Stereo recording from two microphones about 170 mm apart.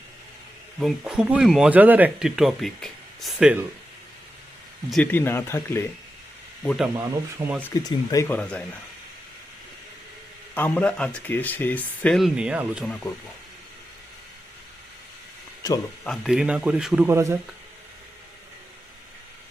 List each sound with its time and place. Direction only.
0.8 s speech: centre (ahead or behind)
3.3 s speech: 10° right (ahead or behind)
5.1 s speech: 15° left (ahead or behind)
6.7 s speech: 5° right (ahead or behind)
6.9 s speech: 20° right (ahead or behind)
7.7 s speech: 20° left (ahead or behind)
8.4 s speech: 5° left (ahead or behind)
10.5 s speech: 10° left (ahead or behind)
15.6 s speech: 20° left (ahead or behind)
16.0 s speech: centre (ahead or behind)